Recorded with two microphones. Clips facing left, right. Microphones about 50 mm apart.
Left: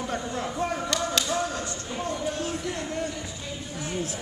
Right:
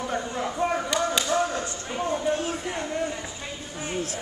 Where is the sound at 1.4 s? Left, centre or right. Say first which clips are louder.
Right 3 dB; right.